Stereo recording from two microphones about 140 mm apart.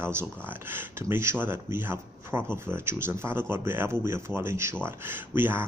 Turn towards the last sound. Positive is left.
turn(degrees=-15)  # may be behind; listen again after turning